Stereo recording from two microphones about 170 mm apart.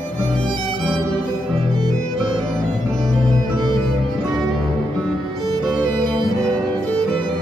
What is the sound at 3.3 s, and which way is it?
Music, 25° right (ahead or behind).